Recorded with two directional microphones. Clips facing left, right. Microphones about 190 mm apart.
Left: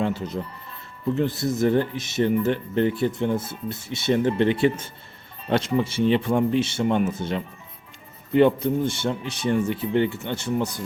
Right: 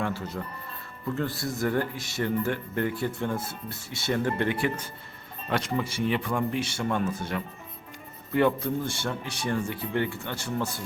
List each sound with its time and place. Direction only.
0.0 s speech: 20° left (ahead or behind)